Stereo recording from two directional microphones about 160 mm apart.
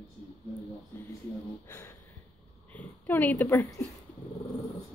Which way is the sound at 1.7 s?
15° left (ahead or behind).